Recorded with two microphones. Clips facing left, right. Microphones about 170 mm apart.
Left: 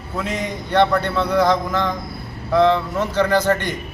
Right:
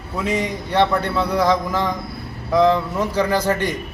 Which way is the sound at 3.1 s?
10° right (ahead or behind).